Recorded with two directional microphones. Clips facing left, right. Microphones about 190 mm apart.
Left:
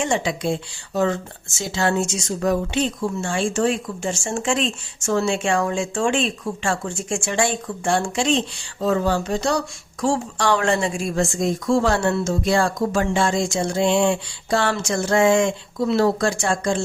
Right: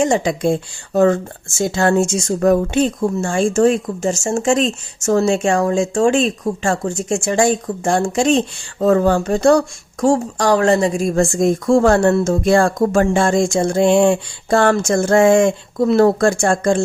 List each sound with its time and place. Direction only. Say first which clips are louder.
0.0 s speech: right 6 dB; 45° right (ahead or behind)